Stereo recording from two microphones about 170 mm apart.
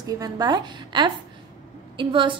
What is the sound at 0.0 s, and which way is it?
A woman's voice, 25° right (ahead or behind).